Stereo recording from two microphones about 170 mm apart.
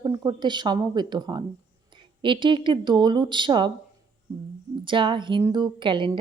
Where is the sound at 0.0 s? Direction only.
20° right (ahead or behind).